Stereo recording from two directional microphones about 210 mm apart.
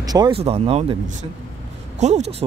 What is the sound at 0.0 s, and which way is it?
Speech, 20° right (ahead or behind).